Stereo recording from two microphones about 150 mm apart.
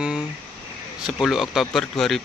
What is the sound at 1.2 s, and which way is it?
Speech, centre (ahead or behind).